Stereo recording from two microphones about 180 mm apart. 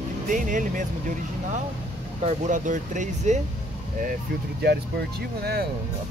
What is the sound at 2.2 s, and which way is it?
Speech, 45° right (ahead or behind).